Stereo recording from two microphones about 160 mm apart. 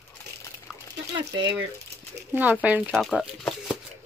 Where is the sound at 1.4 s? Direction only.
30° right (ahead or behind).